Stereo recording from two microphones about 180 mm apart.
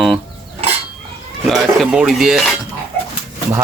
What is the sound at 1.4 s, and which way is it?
Speech, centre (ahead or behind).